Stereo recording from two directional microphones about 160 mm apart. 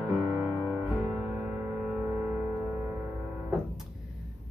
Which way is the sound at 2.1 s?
20° right (ahead or behind).